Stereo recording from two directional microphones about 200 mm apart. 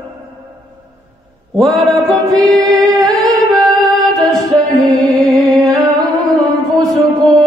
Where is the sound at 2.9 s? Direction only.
Centre (ahead or behind).